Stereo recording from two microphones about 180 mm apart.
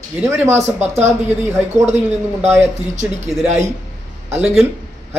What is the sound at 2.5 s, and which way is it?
Speech, 10° right (ahead or behind).